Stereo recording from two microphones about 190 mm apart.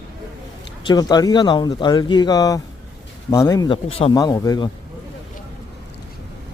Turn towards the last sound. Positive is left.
turn(degrees=20)  # may be behind; listen again after turning